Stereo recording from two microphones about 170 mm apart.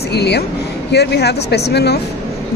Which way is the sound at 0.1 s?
75° left (ahead or behind).